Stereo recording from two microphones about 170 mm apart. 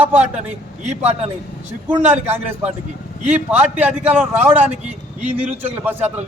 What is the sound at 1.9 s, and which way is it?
A man's voice, 10° right (ahead or behind).